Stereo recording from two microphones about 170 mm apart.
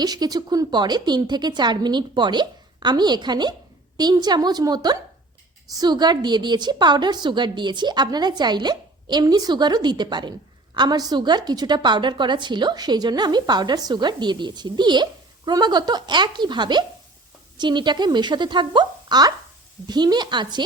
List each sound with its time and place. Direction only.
0.0 s a woman's voice: 25° right (ahead or behind)